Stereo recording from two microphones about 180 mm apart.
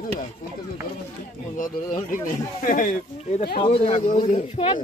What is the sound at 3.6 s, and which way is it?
Speech, 35° left (ahead or behind).